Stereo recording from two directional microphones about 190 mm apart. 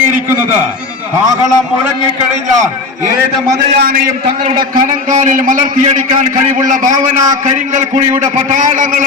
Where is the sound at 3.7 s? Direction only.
55° right (ahead or behind).